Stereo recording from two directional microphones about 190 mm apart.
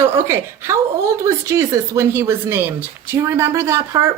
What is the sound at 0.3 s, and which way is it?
A woman's voice, 15° right (ahead or behind).